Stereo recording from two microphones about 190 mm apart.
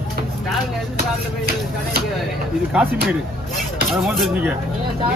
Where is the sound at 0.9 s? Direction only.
50° right (ahead or behind).